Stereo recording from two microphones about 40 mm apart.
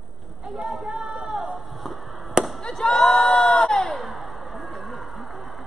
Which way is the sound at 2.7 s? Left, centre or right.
Centre.